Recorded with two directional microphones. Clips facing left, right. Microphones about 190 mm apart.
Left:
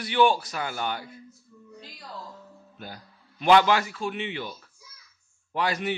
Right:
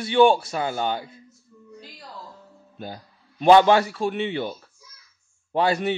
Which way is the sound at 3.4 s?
30° right (ahead or behind).